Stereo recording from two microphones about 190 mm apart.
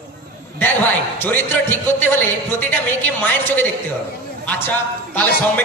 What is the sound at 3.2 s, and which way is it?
A man's voice, 10° left (ahead or behind).